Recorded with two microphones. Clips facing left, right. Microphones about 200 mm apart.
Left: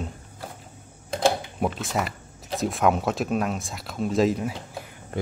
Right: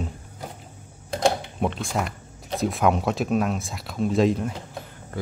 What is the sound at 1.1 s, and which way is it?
Speech, 5° left (ahead or behind).